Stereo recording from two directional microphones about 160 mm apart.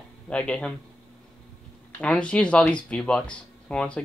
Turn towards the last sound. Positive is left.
turn(degrees=5)  # may be behind; listen again after turning